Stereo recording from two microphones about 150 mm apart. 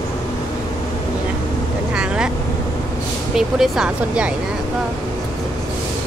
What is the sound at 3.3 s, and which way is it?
Speech, 5° right (ahead or behind).